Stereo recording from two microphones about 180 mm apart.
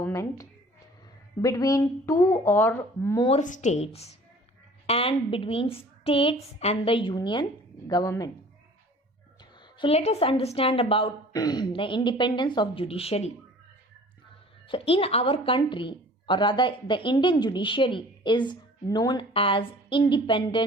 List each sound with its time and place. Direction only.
0.0 s speech: 15° left (ahead or behind)
3.2 s a woman's voice: 40° left (ahead or behind); by 8.3 s 20° left (ahead or behind)
9.4 s a woman's voice: 25° left (ahead or behind)
14.7 s a woman's voice: 30° left (ahead or behind)